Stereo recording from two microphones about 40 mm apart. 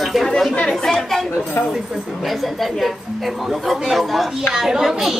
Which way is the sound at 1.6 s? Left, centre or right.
Left.